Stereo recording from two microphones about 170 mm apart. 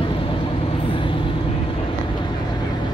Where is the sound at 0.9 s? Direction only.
30° left (ahead or behind).